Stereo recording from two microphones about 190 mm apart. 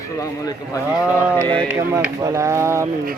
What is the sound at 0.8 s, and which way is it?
Speech, 10° right (ahead or behind).